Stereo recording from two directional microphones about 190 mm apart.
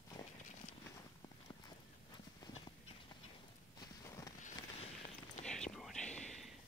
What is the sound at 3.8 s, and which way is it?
Walk, 15° left (ahead or behind).